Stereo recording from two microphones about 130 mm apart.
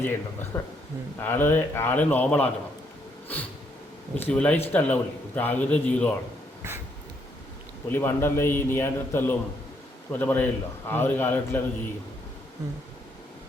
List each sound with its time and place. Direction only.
0.0 s a man's voice: 20° left (ahead or behind)
4.1 s a man's voice: 5° left (ahead or behind)
7.9 s a man's voice: 15° left (ahead or behind)